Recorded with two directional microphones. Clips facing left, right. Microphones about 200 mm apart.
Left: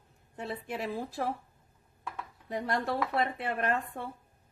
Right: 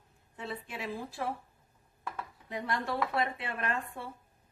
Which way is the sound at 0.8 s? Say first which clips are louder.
Left 4 dB; 40° left (ahead or behind).